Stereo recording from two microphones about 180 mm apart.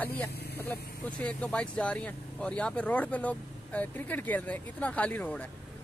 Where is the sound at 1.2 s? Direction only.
5° left (ahead or behind).